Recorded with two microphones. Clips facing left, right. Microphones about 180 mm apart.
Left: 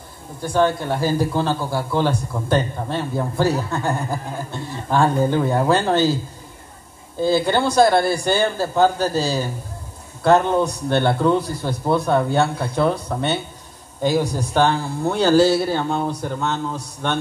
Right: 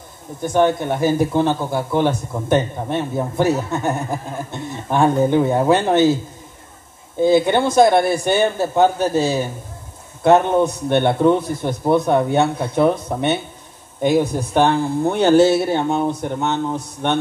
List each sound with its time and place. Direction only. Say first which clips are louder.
0.4 s a man's voice: right 2 dB; 20° right (ahead or behind)
7.2 s a man's voice: right 4 dB; 20° right (ahead or behind)
14.5 s a man's voice: right 3 dB; 20° right (ahead or behind)